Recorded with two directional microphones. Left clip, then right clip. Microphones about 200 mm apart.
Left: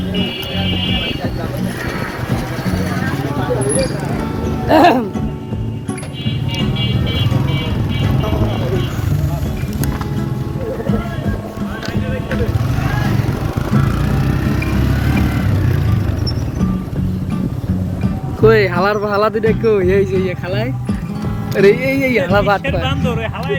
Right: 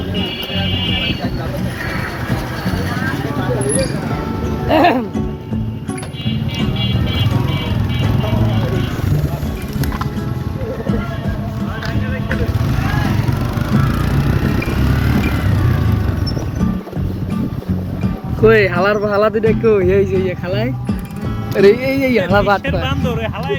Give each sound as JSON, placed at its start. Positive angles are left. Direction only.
{"t": 4.7, "sound": "speech", "side_deg": 30}
{"t": 18.4, "sound": "speech", "side_deg": 10}